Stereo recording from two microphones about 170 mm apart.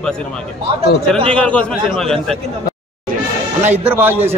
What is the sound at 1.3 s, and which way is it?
A man's voice, 5° left (ahead or behind).